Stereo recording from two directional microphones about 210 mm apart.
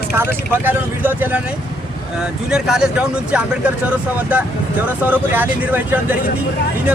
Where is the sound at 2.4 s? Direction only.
5° right (ahead or behind).